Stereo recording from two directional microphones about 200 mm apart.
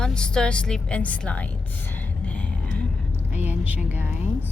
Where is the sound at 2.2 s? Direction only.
5° left (ahead or behind).